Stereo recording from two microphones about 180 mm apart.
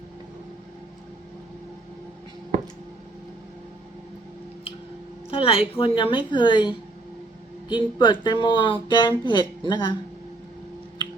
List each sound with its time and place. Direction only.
5.3 s speech: 30° left (ahead or behind)